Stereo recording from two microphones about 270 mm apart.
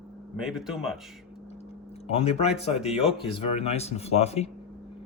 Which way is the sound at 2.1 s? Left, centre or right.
Left.